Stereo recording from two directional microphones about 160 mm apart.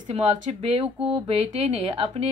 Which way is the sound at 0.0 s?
40° right (ahead or behind).